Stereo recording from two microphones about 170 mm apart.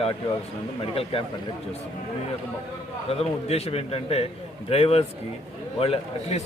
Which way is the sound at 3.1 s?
35° left (ahead or behind).